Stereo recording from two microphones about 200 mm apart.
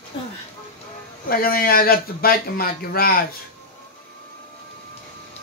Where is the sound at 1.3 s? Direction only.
45° left (ahead or behind).